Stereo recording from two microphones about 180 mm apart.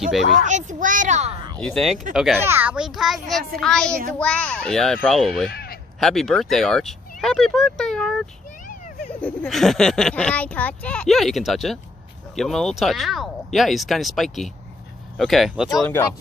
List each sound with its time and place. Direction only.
0.5 s a child's voice: 45° right (ahead or behind)
1.6 s speech: centre (ahead or behind)
5.5 s a sound: 60° left (ahead or behind)
5.9 s speech: centre (ahead or behind)
9.2 s speech: 5° left (ahead or behind)